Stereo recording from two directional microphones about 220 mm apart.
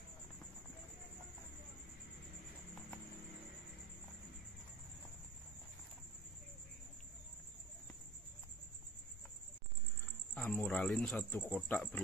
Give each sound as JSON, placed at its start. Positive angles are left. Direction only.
{"t": 10.3, "sound": "speech", "side_deg": 5}